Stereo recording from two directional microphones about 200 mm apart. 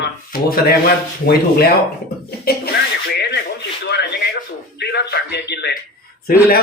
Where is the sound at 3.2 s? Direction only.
55° left (ahead or behind).